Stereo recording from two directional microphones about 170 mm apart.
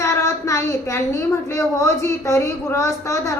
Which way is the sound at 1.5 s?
15° left (ahead or behind).